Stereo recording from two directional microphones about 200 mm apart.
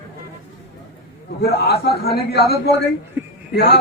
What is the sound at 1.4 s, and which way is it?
A man's voice, 55° left (ahead or behind).